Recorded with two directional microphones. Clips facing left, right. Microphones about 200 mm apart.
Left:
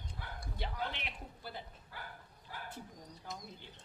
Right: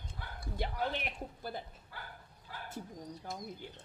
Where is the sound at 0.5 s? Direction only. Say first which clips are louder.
Right 5 dB; 45° right (ahead or behind).